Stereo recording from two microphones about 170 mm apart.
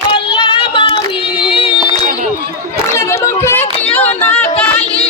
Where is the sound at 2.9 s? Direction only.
15° left (ahead or behind).